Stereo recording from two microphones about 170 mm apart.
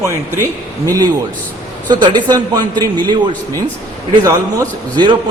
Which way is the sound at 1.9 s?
25° right (ahead or behind).